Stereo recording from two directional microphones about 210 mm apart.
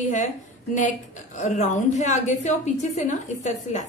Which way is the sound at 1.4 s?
35° left (ahead or behind).